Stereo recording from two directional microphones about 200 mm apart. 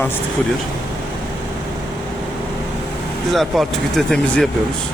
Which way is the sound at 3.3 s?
Centre (ahead or behind).